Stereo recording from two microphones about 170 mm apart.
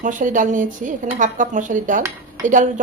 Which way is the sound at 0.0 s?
50° right (ahead or behind).